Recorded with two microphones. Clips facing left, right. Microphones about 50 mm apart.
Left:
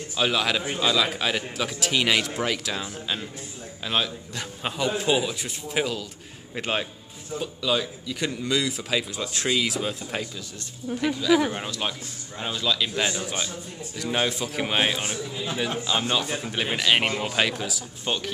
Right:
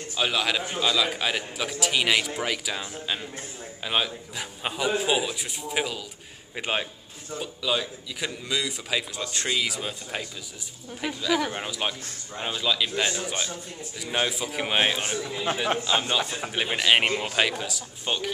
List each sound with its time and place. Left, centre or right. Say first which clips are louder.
0.1 s a man's voice: left 2 dB; centre
11.5 s a man's voice: even; centre
15.1 s a man's voice: right 2 dB; right
15.9 s a man's voice: even; centre